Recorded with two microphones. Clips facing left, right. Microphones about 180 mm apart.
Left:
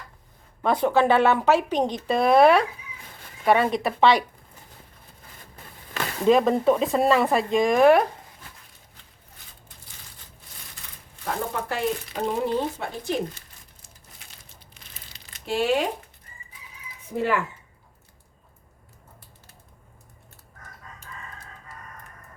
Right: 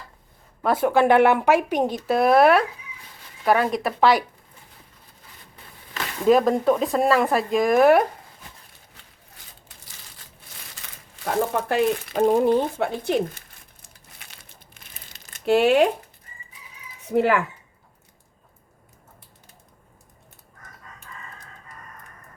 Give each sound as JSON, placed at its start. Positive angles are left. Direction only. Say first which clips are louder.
{"t": 0.6, "sound": "speech", "louder": "right 1 dB", "side_deg": -5}
{"t": 6.2, "sound": "speech", "louder": "right 1 dB", "side_deg": 0}
{"t": 10.8, "sound": "a sound", "louder": "right 2 dB", "side_deg": -90}
{"t": 11.7, "sound": "speech", "louder": "right 5 dB", "side_deg": -45}
{"t": 13.8, "sound": "crumpling", "louder": "right 3 dB", "side_deg": -60}
{"t": 17.1, "sound": "speech", "louder": "right 5 dB", "side_deg": -70}